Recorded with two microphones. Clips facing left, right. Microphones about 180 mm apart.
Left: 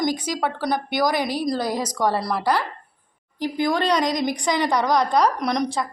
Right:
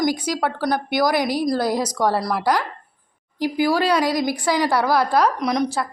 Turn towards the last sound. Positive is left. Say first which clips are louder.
# right 2 dB
turn(degrees=-5)  # may be behind; listen again after turning